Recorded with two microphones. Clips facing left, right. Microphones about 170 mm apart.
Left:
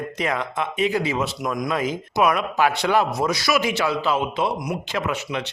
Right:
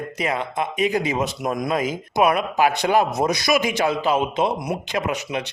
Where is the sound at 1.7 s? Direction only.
10° right (ahead or behind).